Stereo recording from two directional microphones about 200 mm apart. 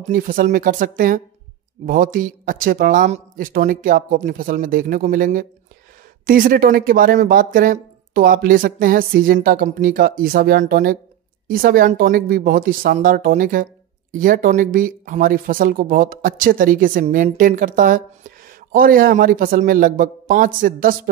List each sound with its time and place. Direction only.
0.1 s speech: 45° right (ahead or behind)